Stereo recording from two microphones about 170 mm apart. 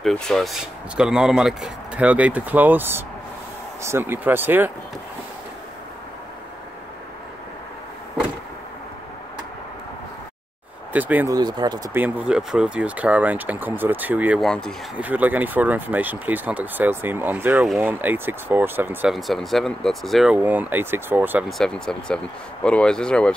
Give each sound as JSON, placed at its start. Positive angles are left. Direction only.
{"t": 0.0, "sound": "speech", "side_deg": 0}
{"t": 10.9, "sound": "speech", "side_deg": -10}
{"t": 11.3, "sound": "speech", "side_deg": -25}
{"t": 12.0, "sound": "speech", "side_deg": -5}
{"t": 14.4, "sound": "speech", "side_deg": 5}
{"t": 15.0, "sound": "speech", "side_deg": -10}
{"t": 19.1, "sound": "speech", "side_deg": 0}
{"t": 21.5, "sound": "speech", "side_deg": 5}